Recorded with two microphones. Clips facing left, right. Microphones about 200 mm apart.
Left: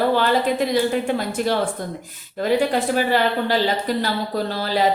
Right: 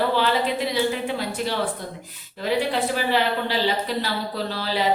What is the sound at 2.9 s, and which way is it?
A woman's voice, 45° left (ahead or behind).